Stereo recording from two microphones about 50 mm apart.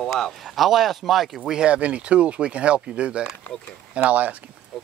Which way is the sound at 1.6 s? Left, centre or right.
Right.